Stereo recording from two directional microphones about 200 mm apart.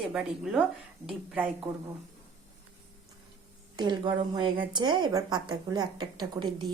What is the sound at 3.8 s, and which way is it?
A woman's voice, 20° right (ahead or behind).